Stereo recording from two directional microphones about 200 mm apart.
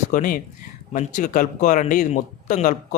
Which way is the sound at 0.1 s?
45° left (ahead or behind).